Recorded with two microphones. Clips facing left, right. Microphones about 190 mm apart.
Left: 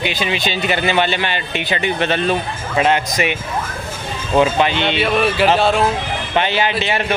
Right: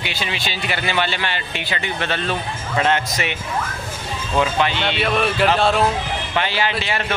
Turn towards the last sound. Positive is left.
turn(degrees=20)  # may be behind; listen again after turning